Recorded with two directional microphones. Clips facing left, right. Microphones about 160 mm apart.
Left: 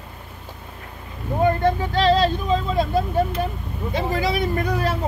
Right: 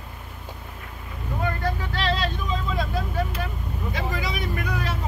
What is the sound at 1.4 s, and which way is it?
Speech, 30° left (ahead or behind).